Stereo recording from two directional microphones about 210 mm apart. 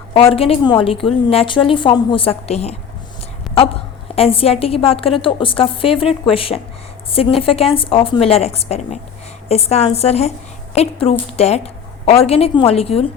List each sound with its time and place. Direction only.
0.1 s a woman's voice: 25° left (ahead or behind)
3.5 s a sound: centre (ahead or behind)
4.1 s a woman's voice: 25° left (ahead or behind)